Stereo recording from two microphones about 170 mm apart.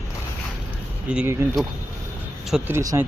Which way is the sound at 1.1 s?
10° right (ahead or behind).